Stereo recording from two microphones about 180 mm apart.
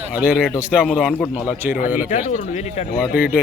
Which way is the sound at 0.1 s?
5° right (ahead or behind).